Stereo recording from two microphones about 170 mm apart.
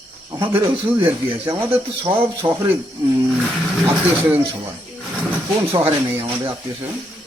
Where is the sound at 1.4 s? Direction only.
15° right (ahead or behind).